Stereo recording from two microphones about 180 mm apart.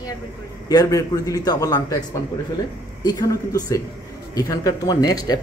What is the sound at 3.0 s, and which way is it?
A man's voice, 20° left (ahead or behind).